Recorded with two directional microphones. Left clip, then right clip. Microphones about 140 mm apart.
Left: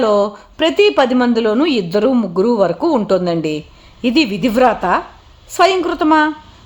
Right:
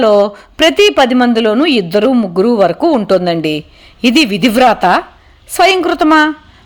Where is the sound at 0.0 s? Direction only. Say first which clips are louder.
Right 5 dB; 10° right (ahead or behind).